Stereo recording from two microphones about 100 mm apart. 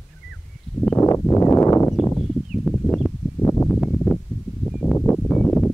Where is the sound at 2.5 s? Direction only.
Centre (ahead or behind).